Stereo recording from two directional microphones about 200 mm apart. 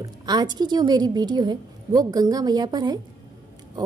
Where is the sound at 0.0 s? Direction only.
20° right (ahead or behind).